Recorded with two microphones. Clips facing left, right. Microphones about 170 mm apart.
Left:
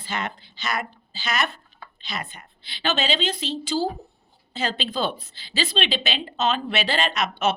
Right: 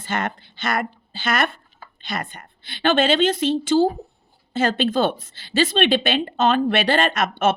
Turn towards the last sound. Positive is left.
turn(degrees=-50)  # may be behind; listen again after turning